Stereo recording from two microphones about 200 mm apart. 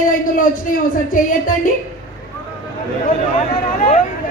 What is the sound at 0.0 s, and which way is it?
Speech, 40° left (ahead or behind).